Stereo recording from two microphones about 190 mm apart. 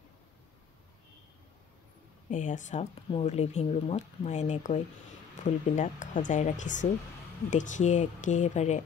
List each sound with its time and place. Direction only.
2.3 s speech: 40° left (ahead or behind)